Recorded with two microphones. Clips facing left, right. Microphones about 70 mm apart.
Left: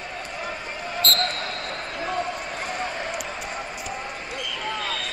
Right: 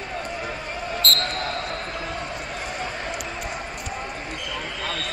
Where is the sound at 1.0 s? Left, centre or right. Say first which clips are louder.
Left 1 dB; centre.